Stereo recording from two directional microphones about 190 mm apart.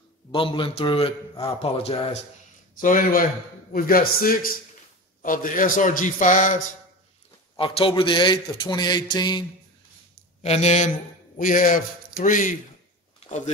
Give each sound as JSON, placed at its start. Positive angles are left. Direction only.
{"t": 0.3, "sound": "a man's voice", "side_deg": 25}
{"t": 2.8, "sound": "a man's voice", "side_deg": 45}
{"t": 7.5, "sound": "a man's voice", "side_deg": 25}
{"t": 10.4, "sound": "a man's voice", "side_deg": 35}